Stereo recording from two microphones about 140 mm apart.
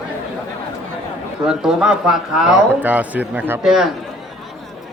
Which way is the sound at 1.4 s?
5° right (ahead or behind).